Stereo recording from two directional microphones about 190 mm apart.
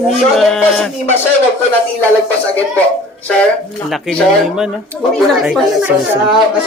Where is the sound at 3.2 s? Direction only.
5° left (ahead or behind).